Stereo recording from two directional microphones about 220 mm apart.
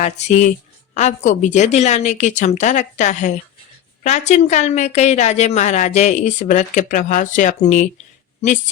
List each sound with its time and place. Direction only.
0.0 s a woman's voice: 30° left (ahead or behind)